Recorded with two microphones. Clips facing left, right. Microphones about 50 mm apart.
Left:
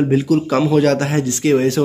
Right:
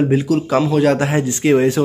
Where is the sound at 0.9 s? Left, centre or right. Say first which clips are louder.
Right 1 dB; centre.